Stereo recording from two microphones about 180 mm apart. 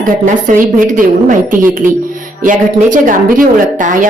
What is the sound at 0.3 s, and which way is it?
A woman's voice, 45° right (ahead or behind).